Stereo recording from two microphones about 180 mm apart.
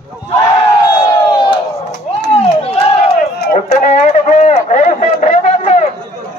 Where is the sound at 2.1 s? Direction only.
45° left (ahead or behind).